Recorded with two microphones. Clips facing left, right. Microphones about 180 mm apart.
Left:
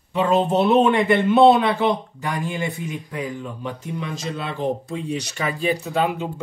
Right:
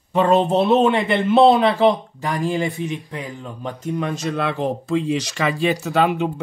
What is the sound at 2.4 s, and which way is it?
Speech, 25° right (ahead or behind).